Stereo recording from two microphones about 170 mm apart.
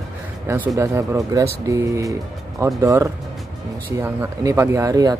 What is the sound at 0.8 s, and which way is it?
Speech, 20° right (ahead or behind).